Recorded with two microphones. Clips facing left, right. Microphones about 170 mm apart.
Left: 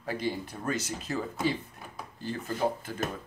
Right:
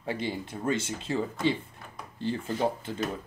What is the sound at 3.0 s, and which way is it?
Speech, 50° left (ahead or behind).